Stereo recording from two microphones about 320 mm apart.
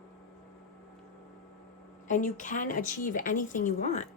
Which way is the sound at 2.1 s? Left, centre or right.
Left.